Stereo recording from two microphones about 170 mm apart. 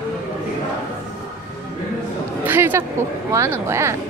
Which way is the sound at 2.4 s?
10° right (ahead or behind).